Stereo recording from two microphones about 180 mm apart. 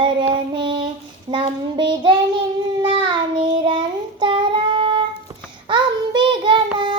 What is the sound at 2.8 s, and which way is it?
Child singing, 25° right (ahead or behind).